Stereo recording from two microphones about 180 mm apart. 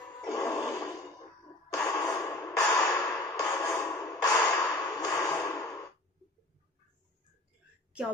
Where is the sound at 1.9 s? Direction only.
15° left (ahead or behind).